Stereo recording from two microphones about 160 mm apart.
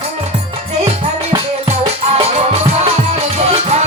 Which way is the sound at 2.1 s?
40° right (ahead or behind).